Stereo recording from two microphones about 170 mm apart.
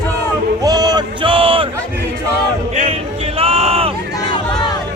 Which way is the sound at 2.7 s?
40° right (ahead or behind).